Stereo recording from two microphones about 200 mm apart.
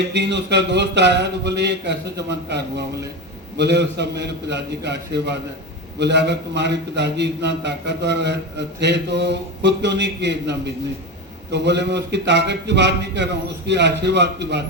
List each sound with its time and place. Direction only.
0.1 s a man's voice: 60° right (ahead or behind)